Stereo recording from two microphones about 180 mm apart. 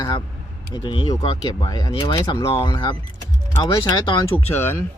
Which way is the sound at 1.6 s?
20° left (ahead or behind).